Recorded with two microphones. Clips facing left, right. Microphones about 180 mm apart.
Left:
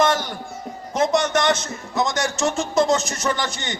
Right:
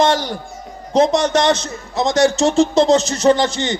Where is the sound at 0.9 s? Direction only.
20° right (ahead or behind).